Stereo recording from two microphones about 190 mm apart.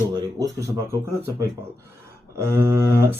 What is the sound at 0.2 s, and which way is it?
Speech, 20° right (ahead or behind).